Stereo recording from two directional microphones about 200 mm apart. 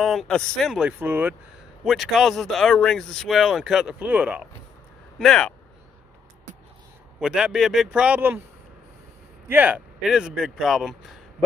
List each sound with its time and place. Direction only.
0.0 s speech: centre (ahead or behind)
5.2 s speech: 5° left (ahead or behind)
7.2 s speech: 5° right (ahead or behind)
9.5 s speech: 10° right (ahead or behind)